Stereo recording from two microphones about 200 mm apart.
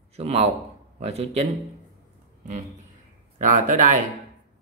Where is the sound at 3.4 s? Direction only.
40° right (ahead or behind).